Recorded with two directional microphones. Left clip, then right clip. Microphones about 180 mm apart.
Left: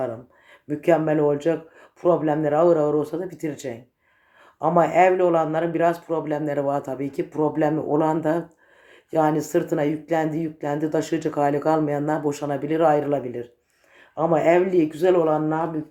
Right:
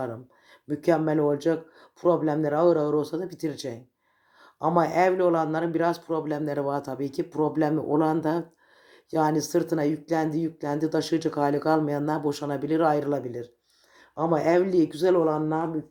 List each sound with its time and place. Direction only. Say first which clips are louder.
0.7 s speech: left 4 dB; 25° right (ahead or behind)